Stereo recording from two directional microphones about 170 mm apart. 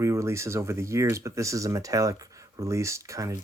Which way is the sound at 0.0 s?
15° right (ahead or behind).